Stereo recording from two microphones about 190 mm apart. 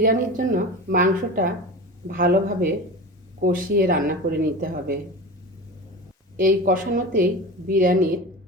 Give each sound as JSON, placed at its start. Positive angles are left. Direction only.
{"t": 0.0, "sound": "speech", "side_deg": -45}
{"t": 6.4, "sound": "speech", "side_deg": -45}